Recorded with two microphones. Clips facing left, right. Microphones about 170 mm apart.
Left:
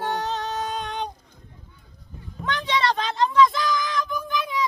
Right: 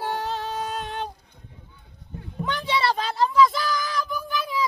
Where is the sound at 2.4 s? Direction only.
10° right (ahead or behind).